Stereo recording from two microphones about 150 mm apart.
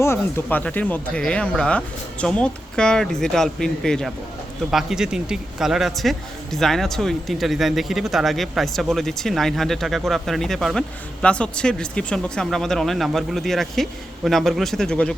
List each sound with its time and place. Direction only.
0.0 s speech: 15° left (ahead or behind)